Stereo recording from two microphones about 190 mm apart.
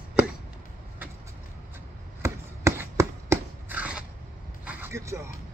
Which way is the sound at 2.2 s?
15° right (ahead or behind).